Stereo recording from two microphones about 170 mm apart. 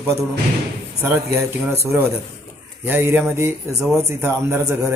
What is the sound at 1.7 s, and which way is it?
Speech, 15° right (ahead or behind).